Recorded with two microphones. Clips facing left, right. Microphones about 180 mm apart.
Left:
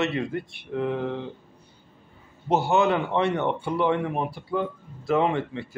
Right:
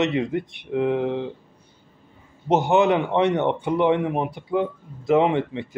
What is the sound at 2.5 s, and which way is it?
Speech, 20° right (ahead or behind).